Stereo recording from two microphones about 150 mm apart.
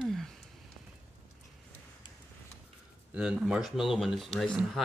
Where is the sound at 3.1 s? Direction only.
5° right (ahead or behind).